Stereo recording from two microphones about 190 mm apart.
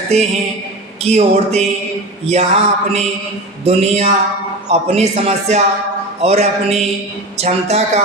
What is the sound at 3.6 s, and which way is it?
A man's voice, 35° right (ahead or behind).